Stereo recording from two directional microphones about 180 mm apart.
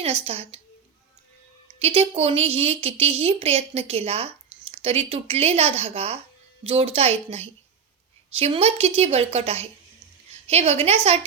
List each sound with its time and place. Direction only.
0.0 s a woman's voice: 35° right (ahead or behind)
1.6 s a woman's voice: 35° right (ahead or behind)